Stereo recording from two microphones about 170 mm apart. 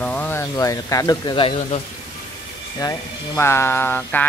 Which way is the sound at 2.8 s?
20° left (ahead or behind).